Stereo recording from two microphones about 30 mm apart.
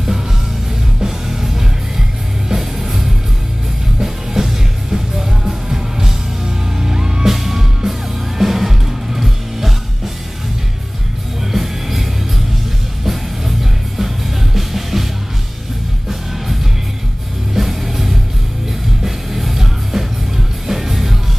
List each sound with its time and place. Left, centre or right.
1.0 s music: centre
11.5 s music: centre
13.0 s music: centre
17.6 s music: centre